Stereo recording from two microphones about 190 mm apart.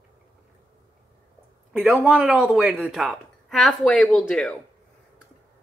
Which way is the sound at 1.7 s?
Centre (ahead or behind).